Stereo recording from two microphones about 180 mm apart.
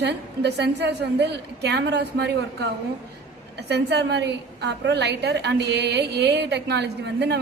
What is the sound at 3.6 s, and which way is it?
A woman's voice, 65° right (ahead or behind).